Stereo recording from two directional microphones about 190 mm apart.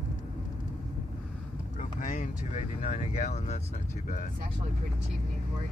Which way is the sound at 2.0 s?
40° left (ahead or behind).